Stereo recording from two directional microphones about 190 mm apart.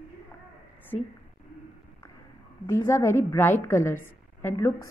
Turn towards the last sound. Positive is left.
turn(degrees=15)  # may be behind; listen again after turning